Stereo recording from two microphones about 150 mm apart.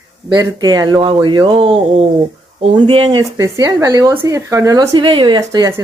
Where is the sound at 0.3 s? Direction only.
25° right (ahead or behind).